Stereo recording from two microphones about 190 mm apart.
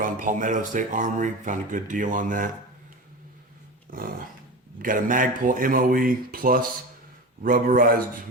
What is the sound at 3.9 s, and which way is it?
Dog, 50° right (ahead or behind).